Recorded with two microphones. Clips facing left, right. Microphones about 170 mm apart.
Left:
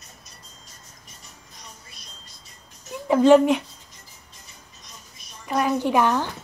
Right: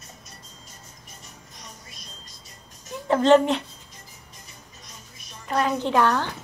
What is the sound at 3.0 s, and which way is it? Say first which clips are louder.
Speech: left 3 dB; 10° left (ahead or behind).